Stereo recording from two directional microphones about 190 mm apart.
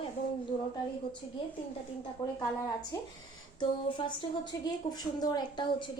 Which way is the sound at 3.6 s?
25° left (ahead or behind).